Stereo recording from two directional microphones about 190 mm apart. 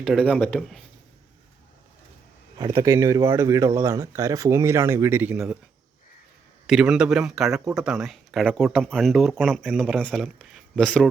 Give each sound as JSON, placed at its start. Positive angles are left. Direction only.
{"t": 0.0, "sound": "speech", "side_deg": 0}
{"t": 2.6, "sound": "speech", "side_deg": -15}
{"t": 6.7, "sound": "speech", "side_deg": -5}